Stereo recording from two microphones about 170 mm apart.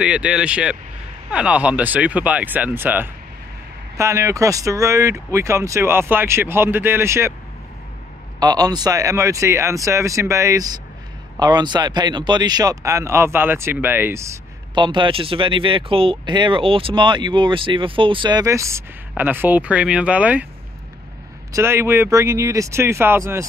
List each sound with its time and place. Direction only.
0.0 s speech: 5° right (ahead or behind)
8.4 s speech: 20° right (ahead or behind)
14.8 s speech: 30° right (ahead or behind); by 20.4 s 10° right (ahead or behind)
21.5 s speech: 15° right (ahead or behind)